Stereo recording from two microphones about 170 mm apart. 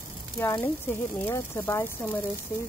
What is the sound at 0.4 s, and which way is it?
Speech, 15° left (ahead or behind).